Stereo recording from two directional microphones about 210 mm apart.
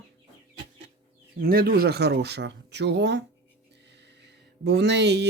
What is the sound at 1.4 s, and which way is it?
Speech, 45° right (ahead or behind).